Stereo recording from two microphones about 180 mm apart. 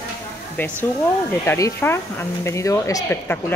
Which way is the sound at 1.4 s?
15° left (ahead or behind).